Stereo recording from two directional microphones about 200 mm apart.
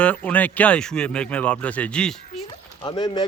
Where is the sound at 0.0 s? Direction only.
5° left (ahead or behind).